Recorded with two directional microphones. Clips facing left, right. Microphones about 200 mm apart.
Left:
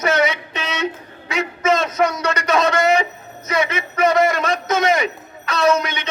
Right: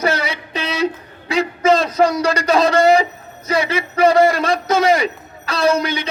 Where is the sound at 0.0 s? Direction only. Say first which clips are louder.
Left 2 dB; 35° right (ahead or behind).